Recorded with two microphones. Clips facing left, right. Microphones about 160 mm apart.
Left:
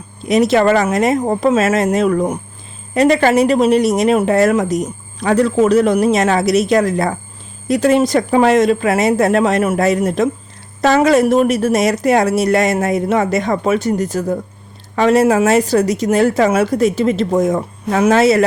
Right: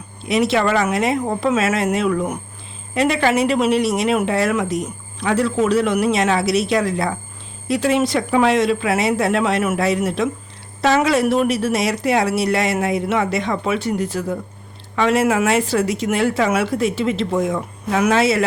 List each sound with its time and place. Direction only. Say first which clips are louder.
0.3 s a woman's voice: left 5 dB; 40° left (ahead or behind)